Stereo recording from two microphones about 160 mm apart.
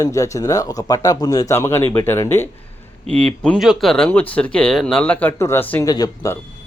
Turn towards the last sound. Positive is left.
turn(degrees=20)  # may be behind; listen again after turning